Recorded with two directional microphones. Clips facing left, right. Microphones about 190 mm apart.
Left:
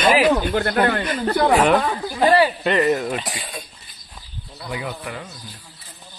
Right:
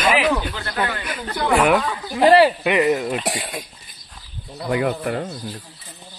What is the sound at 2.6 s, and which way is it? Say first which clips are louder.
Speech: right 1 dB; 10° right (ahead or behind).